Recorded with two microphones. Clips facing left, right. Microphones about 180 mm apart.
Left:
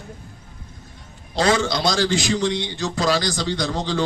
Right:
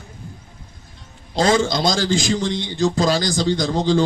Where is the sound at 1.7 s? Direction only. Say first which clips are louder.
Right 1 dB; 45° right (ahead or behind).